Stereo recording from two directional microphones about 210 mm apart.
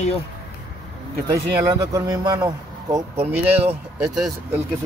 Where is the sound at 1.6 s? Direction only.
20° right (ahead or behind).